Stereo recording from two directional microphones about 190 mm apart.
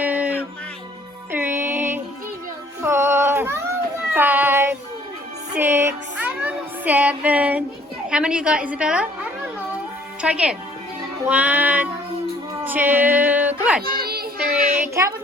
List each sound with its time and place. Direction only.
0.0 s music: 10° right (ahead or behind)
1.3 s music: 10° right (ahead or behind)
2.8 s a sound: 15° right (ahead or behind)
4.1 s child singing: 10° right (ahead or behind)
5.5 s music: 10° right (ahead or behind)
8.1 s a woman's voice: 5° right (ahead or behind)
11.3 s music: 5° right (ahead or behind)
12.6 s speech: 10° right (ahead or behind)
13.8 s children playing: 55° right (ahead or behind)
14.8 s a sound: 15° right (ahead or behind)